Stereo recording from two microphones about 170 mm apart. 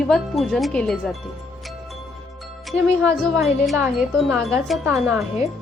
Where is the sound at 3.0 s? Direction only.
5° left (ahead or behind).